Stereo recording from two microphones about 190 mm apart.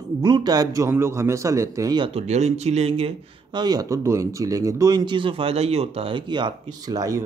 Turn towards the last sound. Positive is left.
turn(degrees=-20)  # may be behind; listen again after turning